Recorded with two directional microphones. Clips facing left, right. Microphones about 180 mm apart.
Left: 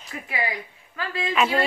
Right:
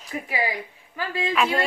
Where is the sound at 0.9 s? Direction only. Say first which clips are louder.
Right 2 dB; 15° right (ahead or behind).